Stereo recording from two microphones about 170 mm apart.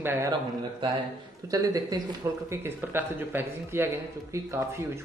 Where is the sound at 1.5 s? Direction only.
20° right (ahead or behind).